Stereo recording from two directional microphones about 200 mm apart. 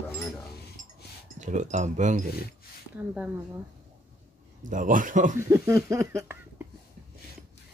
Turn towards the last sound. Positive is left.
turn(degrees=-10)  # may be behind; listen again after turning